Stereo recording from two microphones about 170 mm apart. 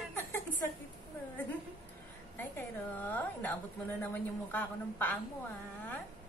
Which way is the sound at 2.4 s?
10° left (ahead or behind).